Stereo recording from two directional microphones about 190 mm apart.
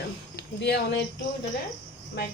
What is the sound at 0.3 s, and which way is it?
Speech, 60° left (ahead or behind).